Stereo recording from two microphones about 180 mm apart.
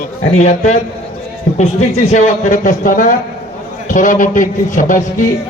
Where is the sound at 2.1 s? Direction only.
40° left (ahead or behind).